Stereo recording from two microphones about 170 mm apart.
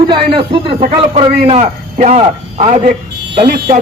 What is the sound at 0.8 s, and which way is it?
A man's voice, 40° right (ahead or behind).